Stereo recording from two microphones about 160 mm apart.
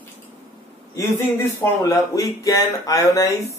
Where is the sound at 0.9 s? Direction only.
15° left (ahead or behind).